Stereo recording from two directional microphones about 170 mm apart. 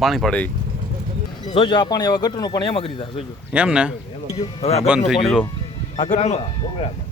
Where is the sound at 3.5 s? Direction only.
5° right (ahead or behind).